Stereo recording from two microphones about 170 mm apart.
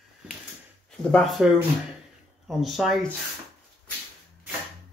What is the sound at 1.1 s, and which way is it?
Speech, centre (ahead or behind).